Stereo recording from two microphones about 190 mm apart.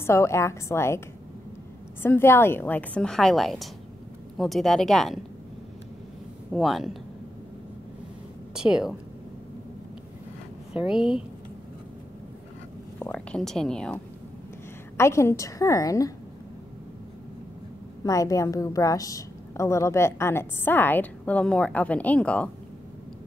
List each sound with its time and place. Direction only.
0.0 s a woman's voice: 15° left (ahead or behind)
2.0 s a woman's voice: 10° left (ahead or behind)
6.5 s speech: centre (ahead or behind)
8.5 s speech: 5° right (ahead or behind)
10.7 s speech: 5° right (ahead or behind)
13.0 s a woman's voice: 5° left (ahead or behind)
18.0 s a woman's voice: 20° left (ahead or behind)